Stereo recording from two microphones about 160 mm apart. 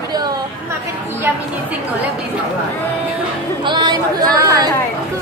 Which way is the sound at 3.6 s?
30° right (ahead or behind).